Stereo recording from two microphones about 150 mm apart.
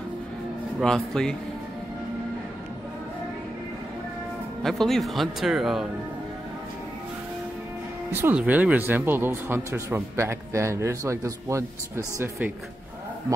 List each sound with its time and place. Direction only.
0.7 s speech: 5° left (ahead or behind)
4.6 s speech: centre (ahead or behind)
8.1 s speech: 15° right (ahead or behind)